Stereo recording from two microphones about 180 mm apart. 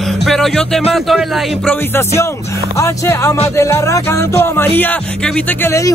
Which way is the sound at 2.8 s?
15° left (ahead or behind).